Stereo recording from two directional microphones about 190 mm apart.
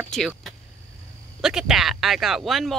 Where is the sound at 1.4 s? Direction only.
5° right (ahead or behind).